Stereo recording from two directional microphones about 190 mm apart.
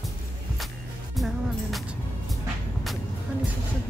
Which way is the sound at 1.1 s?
Centre (ahead or behind).